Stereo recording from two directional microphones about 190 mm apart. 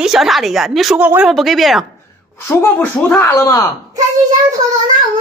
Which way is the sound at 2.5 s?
15° left (ahead or behind).